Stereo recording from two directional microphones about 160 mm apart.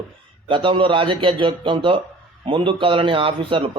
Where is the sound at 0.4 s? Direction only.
30° right (ahead or behind).